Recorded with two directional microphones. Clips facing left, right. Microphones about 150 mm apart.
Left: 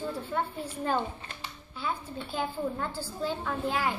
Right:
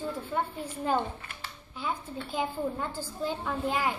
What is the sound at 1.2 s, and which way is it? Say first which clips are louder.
Speech: left 1 dB; 30° left (ahead or behind).